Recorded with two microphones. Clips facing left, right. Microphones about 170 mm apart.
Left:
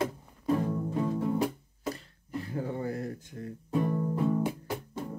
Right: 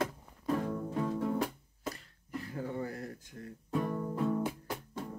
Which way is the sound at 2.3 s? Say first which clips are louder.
Left 4 dB; 30° left (ahead or behind).